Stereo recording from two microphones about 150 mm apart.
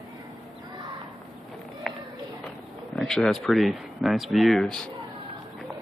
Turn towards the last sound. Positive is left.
turn(degrees=5)  # may be behind; listen again after turning